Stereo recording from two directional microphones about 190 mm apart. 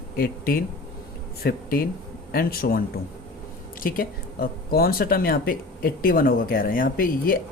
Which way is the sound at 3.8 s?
50° left (ahead or behind).